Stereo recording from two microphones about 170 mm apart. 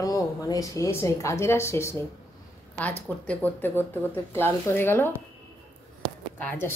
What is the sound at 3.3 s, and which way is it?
Speech, 10° left (ahead or behind).